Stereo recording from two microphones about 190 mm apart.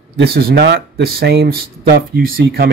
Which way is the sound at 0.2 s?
55° right (ahead or behind).